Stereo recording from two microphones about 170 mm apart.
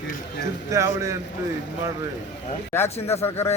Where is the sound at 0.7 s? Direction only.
20° right (ahead or behind).